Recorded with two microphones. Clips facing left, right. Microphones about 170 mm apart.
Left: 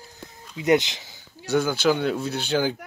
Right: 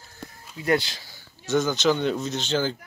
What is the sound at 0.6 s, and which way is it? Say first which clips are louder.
Speech: left 4 dB; 20° left (ahead or behind).